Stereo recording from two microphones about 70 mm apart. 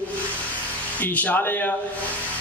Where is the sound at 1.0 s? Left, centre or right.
Left.